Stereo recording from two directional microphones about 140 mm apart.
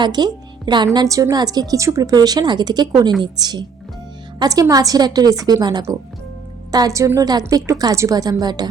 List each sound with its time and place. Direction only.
0.0 s a woman's voice: 30° right (ahead or behind)